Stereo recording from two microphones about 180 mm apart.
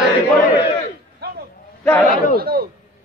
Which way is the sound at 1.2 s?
65° right (ahead or behind).